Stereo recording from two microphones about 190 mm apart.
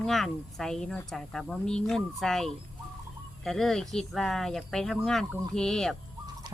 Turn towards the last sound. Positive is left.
turn(degrees=5)  # may be behind; listen again after turning